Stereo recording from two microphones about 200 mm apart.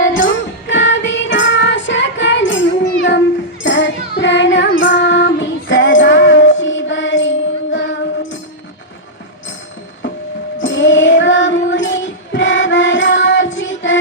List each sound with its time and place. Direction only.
0.0 s music: 65° left (ahead or behind)
0.7 s child singing: 65° left (ahead or behind)
7.7 s music: 65° left (ahead or behind)
10.6 s child singing: 65° left (ahead or behind)